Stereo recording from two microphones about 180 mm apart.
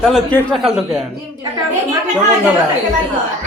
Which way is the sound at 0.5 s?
Centre (ahead or behind).